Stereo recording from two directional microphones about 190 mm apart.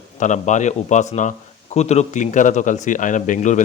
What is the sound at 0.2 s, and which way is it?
A man's voice, 40° left (ahead or behind).